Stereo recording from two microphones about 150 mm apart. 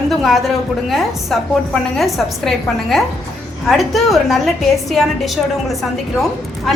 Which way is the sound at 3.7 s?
Centre (ahead or behind).